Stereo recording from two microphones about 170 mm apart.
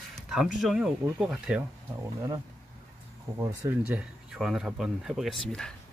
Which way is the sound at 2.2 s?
20° right (ahead or behind).